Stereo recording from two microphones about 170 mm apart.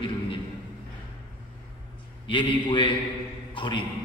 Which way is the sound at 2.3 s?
30° left (ahead or behind).